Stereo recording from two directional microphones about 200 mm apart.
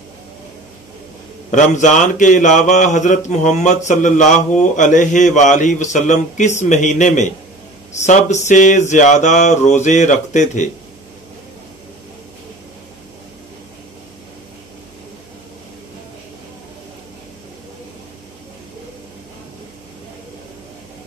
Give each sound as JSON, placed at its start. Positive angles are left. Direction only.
{"t": 1.5, "sound": "speech", "side_deg": 40}